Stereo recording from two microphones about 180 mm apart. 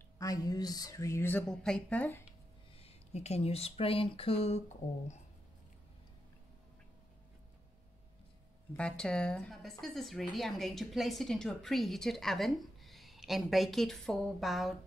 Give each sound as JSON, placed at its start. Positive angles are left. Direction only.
{"t": 0.2, "sound": "speech", "side_deg": 20}
{"t": 2.8, "sound": "speech", "side_deg": 35}
{"t": 8.7, "sound": "speech", "side_deg": 5}